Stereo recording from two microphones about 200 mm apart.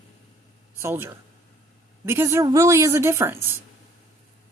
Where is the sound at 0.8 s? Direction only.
10° right (ahead or behind).